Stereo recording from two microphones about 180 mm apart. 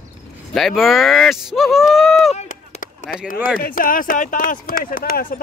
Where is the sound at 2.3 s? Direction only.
40° left (ahead or behind).